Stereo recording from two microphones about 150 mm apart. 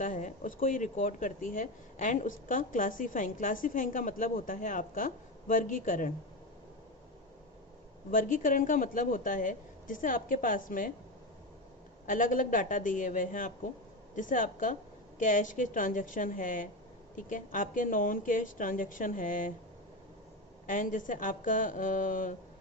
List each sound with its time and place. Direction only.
0.0 s speech: 60° left (ahead or behind)
8.1 s speech: 60° left (ahead or behind)
12.0 s speech: 60° left (ahead or behind)
20.7 s speech: 60° left (ahead or behind)